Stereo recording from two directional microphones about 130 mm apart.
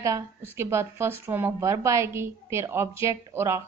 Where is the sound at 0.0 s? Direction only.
25° right (ahead or behind).